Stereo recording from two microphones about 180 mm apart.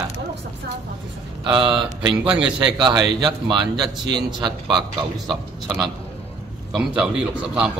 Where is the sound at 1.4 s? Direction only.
30° right (ahead or behind).